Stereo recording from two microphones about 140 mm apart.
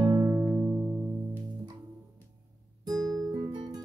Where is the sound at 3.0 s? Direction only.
Centre (ahead or behind).